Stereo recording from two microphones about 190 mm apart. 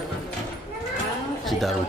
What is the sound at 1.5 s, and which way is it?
Speech, centre (ahead or behind).